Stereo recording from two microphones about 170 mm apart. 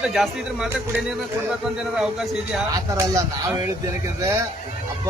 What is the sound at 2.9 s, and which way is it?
Speech, 20° right (ahead or behind).